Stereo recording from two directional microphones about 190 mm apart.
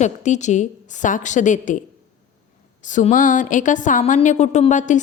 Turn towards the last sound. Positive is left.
turn(degrees=40)  # may be behind; listen again after turning